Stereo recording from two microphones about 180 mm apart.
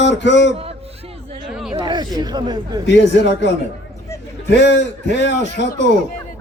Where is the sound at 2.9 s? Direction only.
75° left (ahead or behind).